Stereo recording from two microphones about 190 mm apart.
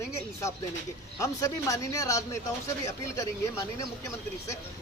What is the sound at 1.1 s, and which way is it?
Speech, 15° left (ahead or behind).